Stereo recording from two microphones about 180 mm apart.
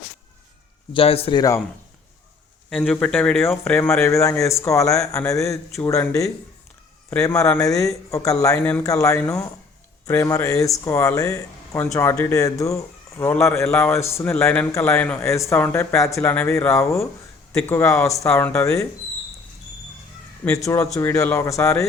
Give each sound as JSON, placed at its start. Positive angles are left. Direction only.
{"t": 0.9, "sound": "speech", "side_deg": 35}
{"t": 2.6, "sound": "speech", "side_deg": 5}
{"t": 20.4, "sound": "speech", "side_deg": 15}